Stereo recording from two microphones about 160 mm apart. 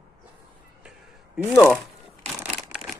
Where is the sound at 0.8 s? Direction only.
5° right (ahead or behind).